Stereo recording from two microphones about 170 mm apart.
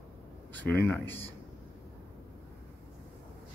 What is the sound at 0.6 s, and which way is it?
Speech, 10° left (ahead or behind).